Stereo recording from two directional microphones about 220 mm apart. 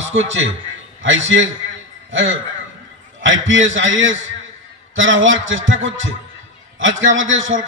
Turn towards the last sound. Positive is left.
turn(degrees=-60)  # may be behind; listen again after turning